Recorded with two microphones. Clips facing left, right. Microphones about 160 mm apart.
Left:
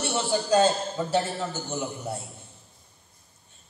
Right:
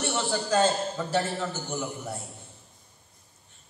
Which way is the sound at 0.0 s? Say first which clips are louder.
Left 2 dB; 20° left (ahead or behind).